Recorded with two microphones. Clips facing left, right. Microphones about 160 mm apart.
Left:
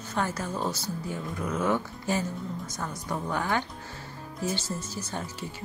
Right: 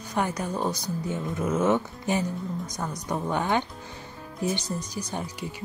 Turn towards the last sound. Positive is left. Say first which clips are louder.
# right 3 dB
turn(degrees=-15)  # may be behind; listen again after turning